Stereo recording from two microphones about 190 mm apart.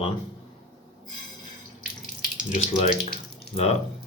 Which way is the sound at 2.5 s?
45° left (ahead or behind).